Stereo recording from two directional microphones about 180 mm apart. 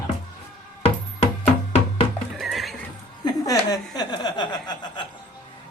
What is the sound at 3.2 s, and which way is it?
Speech, 20° left (ahead or behind).